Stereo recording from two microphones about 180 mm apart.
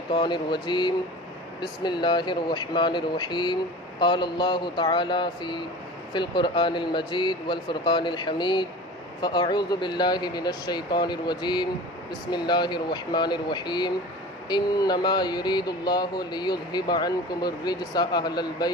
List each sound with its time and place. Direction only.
0.1 s speech: 25° left (ahead or behind)